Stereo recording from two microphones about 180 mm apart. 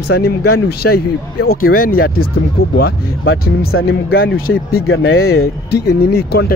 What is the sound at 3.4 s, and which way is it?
Speech, 55° left (ahead or behind).